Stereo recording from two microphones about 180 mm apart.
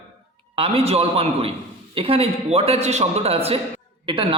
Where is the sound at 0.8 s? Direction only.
35° right (ahead or behind).